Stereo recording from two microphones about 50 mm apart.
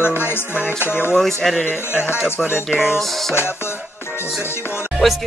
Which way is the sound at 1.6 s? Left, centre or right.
Left.